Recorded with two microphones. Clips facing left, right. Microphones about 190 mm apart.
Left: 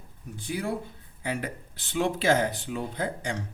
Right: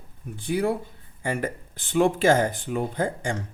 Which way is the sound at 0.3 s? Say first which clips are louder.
Right 6 dB; 55° right (ahead or behind).